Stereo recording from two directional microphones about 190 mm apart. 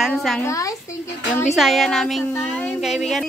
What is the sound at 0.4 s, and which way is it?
Speech, 15° left (ahead or behind).